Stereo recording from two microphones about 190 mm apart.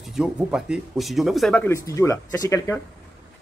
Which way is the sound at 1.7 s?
15° left (ahead or behind).